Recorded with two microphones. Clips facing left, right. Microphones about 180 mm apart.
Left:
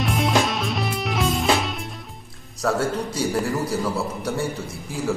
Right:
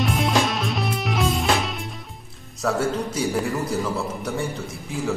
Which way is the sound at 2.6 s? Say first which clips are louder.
Even; centre (ahead or behind).